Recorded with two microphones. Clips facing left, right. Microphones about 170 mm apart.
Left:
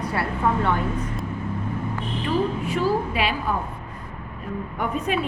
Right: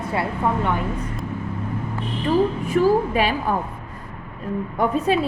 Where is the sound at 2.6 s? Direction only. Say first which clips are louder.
Right 5 dB; 45° right (ahead or behind).